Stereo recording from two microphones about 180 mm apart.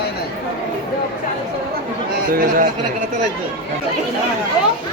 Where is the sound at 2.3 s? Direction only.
55° right (ahead or behind).